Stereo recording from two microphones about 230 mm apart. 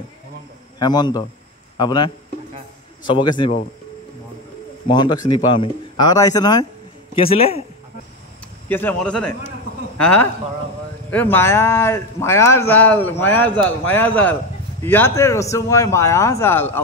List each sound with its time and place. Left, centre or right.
0.7 s a man's voice: centre
3.1 s a man's voice: centre
4.8 s a man's voice: centre
8.6 s a man's voice: centre